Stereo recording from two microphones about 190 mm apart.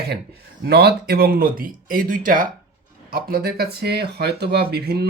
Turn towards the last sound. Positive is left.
turn(degrees=-55)  # may be behind; listen again after turning